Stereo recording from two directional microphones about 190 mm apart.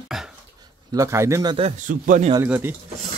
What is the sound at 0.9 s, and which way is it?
Speech, 15° right (ahead or behind).